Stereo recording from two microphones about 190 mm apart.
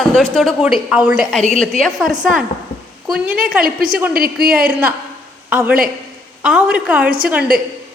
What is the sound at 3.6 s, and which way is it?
Speech, 45° right (ahead or behind).